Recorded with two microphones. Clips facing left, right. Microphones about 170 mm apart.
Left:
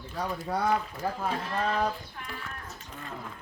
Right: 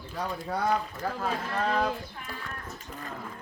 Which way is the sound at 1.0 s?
15° left (ahead or behind).